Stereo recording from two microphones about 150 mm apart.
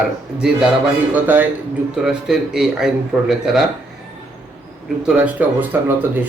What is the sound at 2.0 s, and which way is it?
Speech, 5° right (ahead or behind).